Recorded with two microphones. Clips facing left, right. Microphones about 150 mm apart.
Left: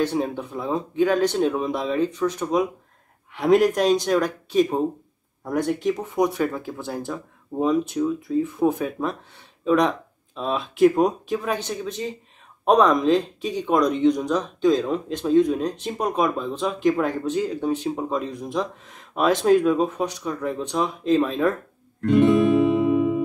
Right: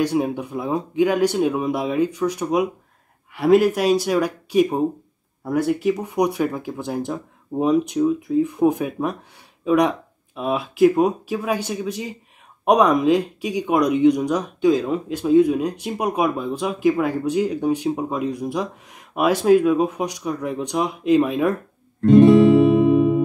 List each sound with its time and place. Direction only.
0.0 s speech: 10° right (ahead or behind)
22.0 s guitar: 35° right (ahead or behind)
22.8 s music: 25° right (ahead or behind)